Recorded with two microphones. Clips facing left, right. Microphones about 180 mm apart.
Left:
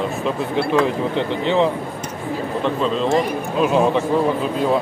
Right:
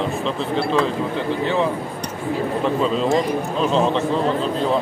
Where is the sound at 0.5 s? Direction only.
15° left (ahead or behind).